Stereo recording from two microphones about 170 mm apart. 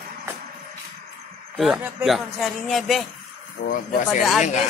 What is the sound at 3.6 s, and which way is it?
Speech, 50° left (ahead or behind).